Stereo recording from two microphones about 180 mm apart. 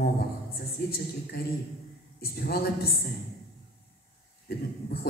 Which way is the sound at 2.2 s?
55° left (ahead or behind).